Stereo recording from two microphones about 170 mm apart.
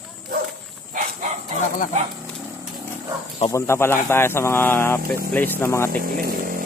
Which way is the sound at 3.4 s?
15° left (ahead or behind).